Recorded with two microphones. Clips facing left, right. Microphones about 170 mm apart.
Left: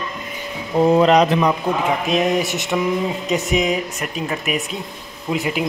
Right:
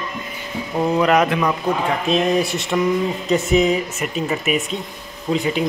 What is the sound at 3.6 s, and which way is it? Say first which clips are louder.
Speech: right 2 dB; centre (ahead or behind).